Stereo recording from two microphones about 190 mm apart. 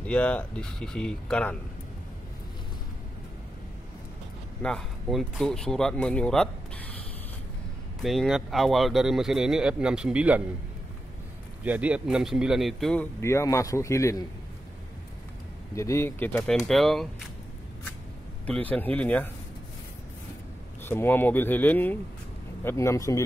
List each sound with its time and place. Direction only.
0.0 s speech: 5° left (ahead or behind)
4.6 s speech: 5° left (ahead or behind)
8.0 s speech: centre (ahead or behind)
11.6 s speech: 5° right (ahead or behind); by 14.2 s 15° left (ahead or behind)
15.7 s speech: 15° left (ahead or behind)
18.4 s speech: 10° left (ahead or behind)
20.8 s speech: 10° left (ahead or behind)